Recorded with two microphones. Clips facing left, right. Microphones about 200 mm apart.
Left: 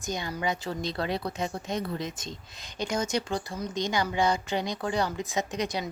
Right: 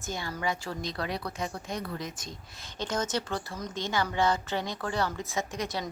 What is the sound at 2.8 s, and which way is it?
A woman's voice, 10° left (ahead or behind).